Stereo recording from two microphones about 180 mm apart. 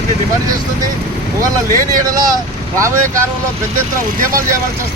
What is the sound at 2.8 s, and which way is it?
Speech, 15° right (ahead or behind).